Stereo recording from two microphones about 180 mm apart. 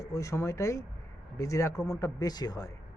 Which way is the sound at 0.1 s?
15° left (ahead or behind).